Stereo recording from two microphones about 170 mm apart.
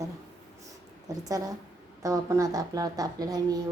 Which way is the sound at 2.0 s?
20° right (ahead or behind).